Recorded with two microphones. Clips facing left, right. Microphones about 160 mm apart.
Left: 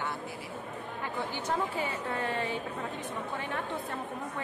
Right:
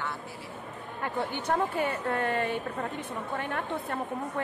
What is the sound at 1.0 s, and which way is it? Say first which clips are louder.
Speech: right 5 dB; 55° right (ahead or behind).